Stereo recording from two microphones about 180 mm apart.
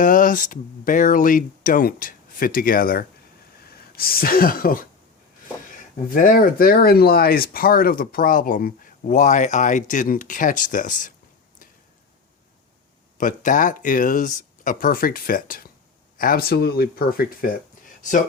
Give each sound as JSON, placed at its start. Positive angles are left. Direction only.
{"t": 0.0, "sound": "speech", "side_deg": 50}
{"t": 6.1, "sound": "speech", "side_deg": 50}
{"t": 13.1, "sound": "speech", "side_deg": 45}